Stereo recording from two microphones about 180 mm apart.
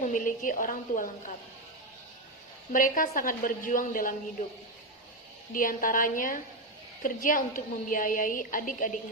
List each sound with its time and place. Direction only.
0.0 s a woman's voice: 45° left (ahead or behind)
2.7 s a woman's voice: 50° left (ahead or behind)
5.5 s a woman's voice: 50° left (ahead or behind)